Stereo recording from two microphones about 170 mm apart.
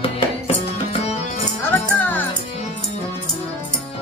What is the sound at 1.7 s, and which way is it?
Music, 10° left (ahead or behind).